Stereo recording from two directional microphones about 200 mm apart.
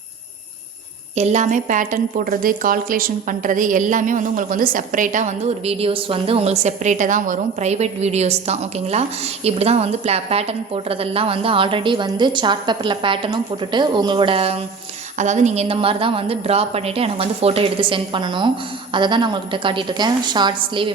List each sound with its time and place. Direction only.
1.1 s a woman's voice: 35° right (ahead or behind)